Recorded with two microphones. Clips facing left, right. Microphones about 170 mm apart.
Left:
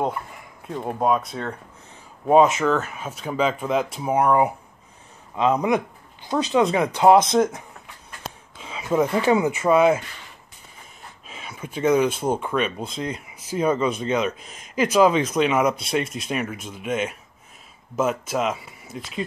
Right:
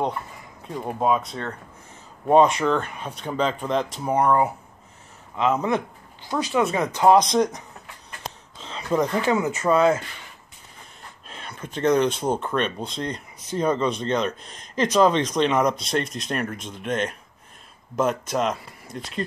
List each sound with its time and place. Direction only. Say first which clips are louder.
0.7 s speech: left 1 dB; 5° left (ahead or behind)
7.3 s speech: left 2 dB; 5° left (ahead or behind)
11.2 s speech: left 1 dB; 5° left (ahead or behind)